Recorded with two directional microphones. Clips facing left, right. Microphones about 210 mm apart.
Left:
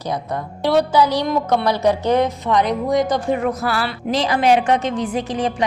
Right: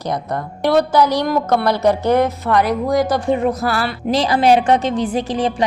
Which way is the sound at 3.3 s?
30° right (ahead or behind).